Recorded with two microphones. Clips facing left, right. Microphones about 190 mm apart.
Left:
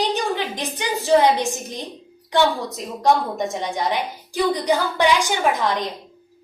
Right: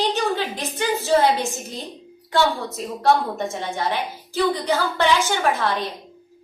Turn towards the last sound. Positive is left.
turn(degrees=15)  # may be behind; listen again after turning